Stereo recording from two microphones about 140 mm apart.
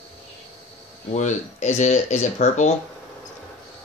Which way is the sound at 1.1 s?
55° left (ahead or behind).